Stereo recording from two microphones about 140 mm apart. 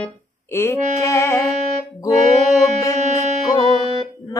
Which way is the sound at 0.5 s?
20° left (ahead or behind).